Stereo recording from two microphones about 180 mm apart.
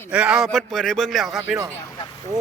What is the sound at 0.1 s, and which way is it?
Speech, 5° right (ahead or behind).